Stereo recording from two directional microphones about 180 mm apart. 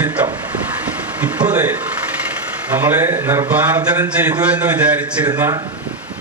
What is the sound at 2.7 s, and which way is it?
Speech, 10° right (ahead or behind).